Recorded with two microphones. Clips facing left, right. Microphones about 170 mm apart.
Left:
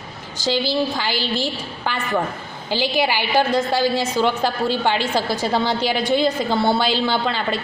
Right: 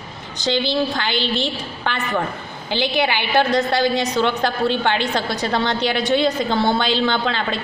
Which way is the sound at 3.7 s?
10° left (ahead or behind).